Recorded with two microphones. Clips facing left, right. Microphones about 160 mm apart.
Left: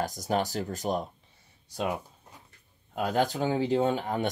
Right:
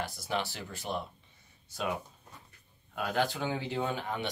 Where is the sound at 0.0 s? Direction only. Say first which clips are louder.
Left 6 dB; 45° left (ahead or behind).